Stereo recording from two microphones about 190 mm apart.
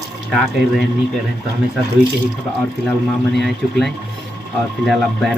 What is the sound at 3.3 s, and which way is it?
Speech, centre (ahead or behind).